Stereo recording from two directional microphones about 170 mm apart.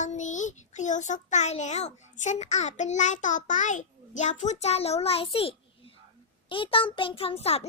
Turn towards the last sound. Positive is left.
turn(degrees=35)  # may be behind; listen again after turning